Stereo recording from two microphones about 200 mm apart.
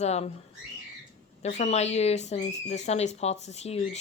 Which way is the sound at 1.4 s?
35° left (ahead or behind).